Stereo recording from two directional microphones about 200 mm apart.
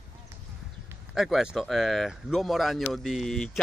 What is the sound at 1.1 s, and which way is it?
Speech, centre (ahead or behind).